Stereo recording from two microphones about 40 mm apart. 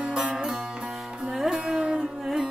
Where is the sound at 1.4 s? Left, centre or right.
Centre.